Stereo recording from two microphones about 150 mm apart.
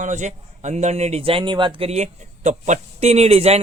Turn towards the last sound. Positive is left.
turn(degrees=-45)  # may be behind; listen again after turning